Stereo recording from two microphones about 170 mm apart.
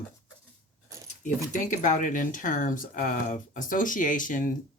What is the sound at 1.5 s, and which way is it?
Speech, 50° left (ahead or behind).